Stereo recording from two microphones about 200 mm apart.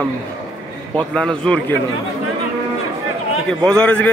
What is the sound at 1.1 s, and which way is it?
Speech, 5° left (ahead or behind).